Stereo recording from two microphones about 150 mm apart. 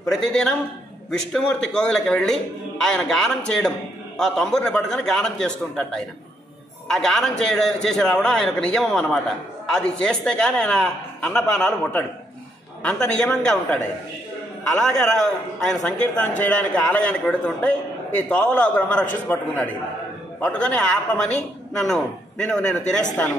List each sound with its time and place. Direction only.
0.0 s a man's voice: 5° left (ahead or behind)
14.8 s a man's voice: 5° left (ahead or behind)